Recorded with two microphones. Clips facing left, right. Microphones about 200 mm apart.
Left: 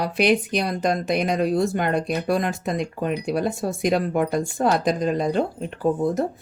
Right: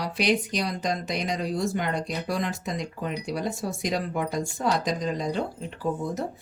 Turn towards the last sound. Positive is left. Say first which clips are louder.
# left 7 dB
turn(degrees=55)  # may be behind; listen again after turning